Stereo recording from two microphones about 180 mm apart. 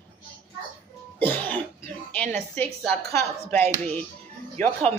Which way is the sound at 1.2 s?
10° left (ahead or behind).